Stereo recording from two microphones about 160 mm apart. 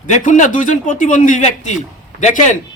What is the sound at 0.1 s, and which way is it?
A man's voice, 50° left (ahead or behind).